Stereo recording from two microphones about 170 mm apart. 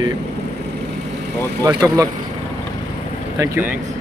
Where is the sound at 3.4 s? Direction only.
15° right (ahead or behind).